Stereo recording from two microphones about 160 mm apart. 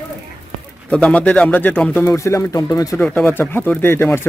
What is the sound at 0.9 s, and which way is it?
Speech, 5° left (ahead or behind).